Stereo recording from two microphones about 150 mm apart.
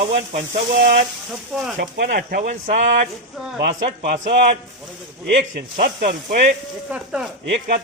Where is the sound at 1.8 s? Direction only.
70° right (ahead or behind); by 4.5 s 45° right (ahead or behind).